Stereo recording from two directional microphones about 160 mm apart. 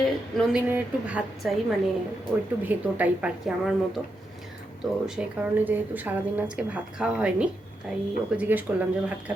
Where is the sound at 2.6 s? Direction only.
10° right (ahead or behind).